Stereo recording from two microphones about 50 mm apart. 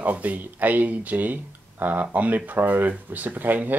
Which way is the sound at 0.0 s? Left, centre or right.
Right.